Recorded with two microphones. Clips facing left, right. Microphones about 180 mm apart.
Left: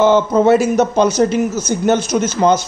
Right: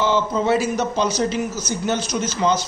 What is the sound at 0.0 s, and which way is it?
Speech, 50° left (ahead or behind).